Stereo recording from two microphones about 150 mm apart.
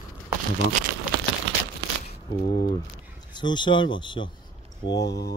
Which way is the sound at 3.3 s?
30° left (ahead or behind).